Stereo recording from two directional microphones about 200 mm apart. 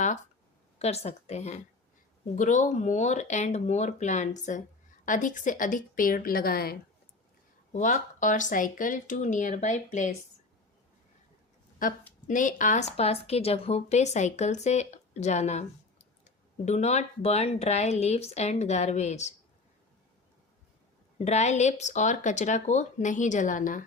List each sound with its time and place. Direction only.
0.8 s speech: 30° left (ahead or behind)
12.3 s speech: 40° left (ahead or behind)
21.2 s speech: 35° left (ahead or behind)